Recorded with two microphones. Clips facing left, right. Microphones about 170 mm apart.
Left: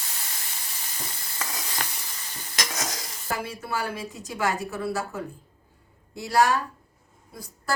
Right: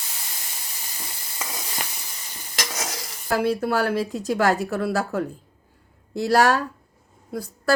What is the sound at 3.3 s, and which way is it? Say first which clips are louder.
A woman's voice: right 9 dB; 70° right (ahead or behind).